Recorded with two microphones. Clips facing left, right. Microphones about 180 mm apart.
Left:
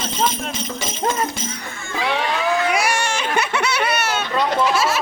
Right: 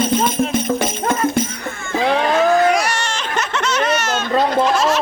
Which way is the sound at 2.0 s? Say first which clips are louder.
Right 6 dB; 45° right (ahead or behind).